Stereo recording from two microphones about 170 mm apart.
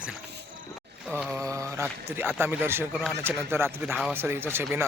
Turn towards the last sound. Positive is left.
turn(degrees=-15)  # may be behind; listen again after turning